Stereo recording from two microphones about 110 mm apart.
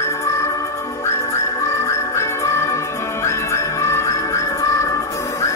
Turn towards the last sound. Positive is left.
turn(degrees=25)  # may be behind; listen again after turning